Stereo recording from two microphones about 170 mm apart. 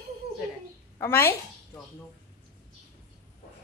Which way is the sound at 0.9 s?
15° left (ahead or behind).